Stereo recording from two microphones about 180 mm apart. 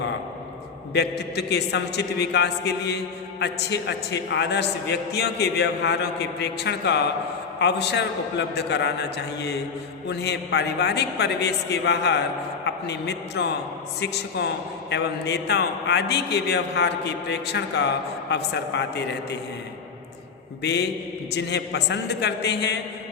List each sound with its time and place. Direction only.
0.9 s a man's voice: 65° left (ahead or behind)
20.6 s a man's voice: 65° left (ahead or behind)